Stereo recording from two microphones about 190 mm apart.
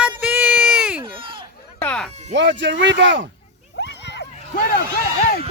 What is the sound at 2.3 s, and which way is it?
Speech, 70° right (ahead or behind).